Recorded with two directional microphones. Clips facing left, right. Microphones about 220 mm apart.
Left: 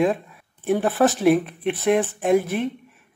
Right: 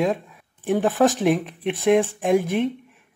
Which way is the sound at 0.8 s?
15° right (ahead or behind).